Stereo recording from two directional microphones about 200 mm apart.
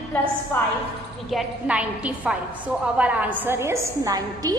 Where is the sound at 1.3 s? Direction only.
5° right (ahead or behind).